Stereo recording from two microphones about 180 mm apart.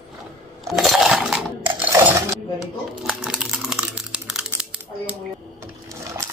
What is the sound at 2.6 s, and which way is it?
Crumpling, 5° right (ahead or behind).